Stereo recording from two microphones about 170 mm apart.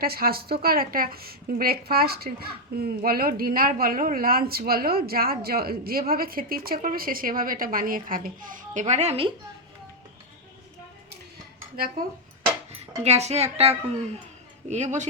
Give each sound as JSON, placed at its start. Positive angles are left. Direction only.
{"t": 0.0, "sound": "a woman's voice", "side_deg": -65}
{"t": 13.0, "sound": "a woman's voice", "side_deg": -40}